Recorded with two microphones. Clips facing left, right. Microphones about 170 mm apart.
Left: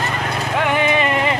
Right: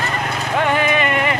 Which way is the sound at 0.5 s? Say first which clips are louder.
Even; 15° left (ahead or behind).